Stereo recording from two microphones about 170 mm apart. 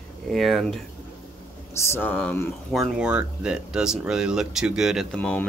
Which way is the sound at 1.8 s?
15° left (ahead or behind).